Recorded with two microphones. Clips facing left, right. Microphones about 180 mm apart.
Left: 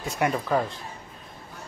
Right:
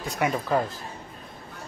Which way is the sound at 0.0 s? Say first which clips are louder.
Left 1 dB; centre (ahead or behind).